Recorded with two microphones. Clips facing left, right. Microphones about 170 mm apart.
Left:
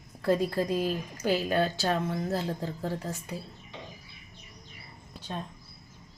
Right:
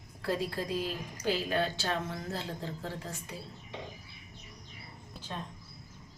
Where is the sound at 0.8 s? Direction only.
45° left (ahead or behind).